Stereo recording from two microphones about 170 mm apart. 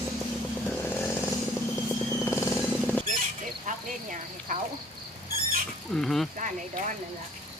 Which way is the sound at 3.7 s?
50° right (ahead or behind).